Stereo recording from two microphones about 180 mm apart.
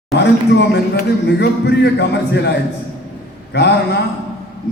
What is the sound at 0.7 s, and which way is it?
A man's voice, 70° left (ahead or behind).